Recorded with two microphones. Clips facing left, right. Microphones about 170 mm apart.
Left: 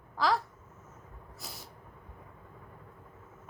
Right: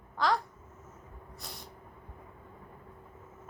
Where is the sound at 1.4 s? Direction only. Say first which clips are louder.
Even; 5° left (ahead or behind).